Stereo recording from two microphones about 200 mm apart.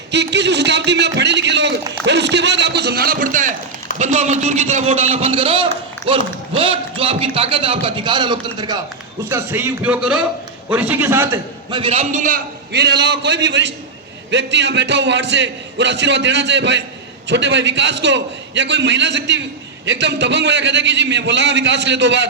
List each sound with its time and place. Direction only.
0.1 s a sound: 60° right (ahead or behind); by 3.5 s 40° right (ahead or behind)
3.9 s a man's voice: 35° right (ahead or behind); by 11.8 s 15° right (ahead or behind)
11.8 s a man's voice: 30° right (ahead or behind)
12.7 s a man's voice: 55° right (ahead or behind)